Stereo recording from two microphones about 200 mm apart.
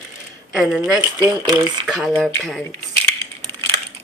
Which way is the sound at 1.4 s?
20° right (ahead or behind).